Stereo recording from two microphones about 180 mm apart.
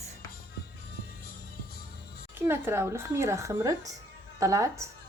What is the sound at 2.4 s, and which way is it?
Speech, 15° right (ahead or behind).